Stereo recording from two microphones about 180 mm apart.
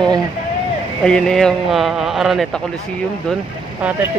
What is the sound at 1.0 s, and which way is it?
Speech, 5° left (ahead or behind).